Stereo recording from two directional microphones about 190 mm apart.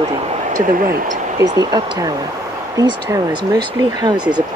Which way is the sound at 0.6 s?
45° right (ahead or behind).